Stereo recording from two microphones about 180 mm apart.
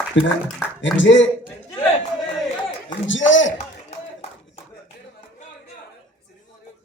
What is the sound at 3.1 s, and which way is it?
Speech, 90° left.